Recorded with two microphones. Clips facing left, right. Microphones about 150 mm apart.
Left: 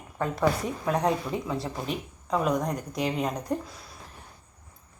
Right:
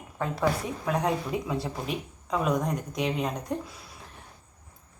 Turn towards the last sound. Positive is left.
turn(degrees=0)  # may be behind; listen again after turning